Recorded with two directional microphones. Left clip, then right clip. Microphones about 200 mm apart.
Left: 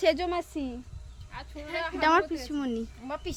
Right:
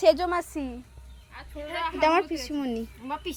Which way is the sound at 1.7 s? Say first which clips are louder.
Right 2 dB; 30° left (ahead or behind).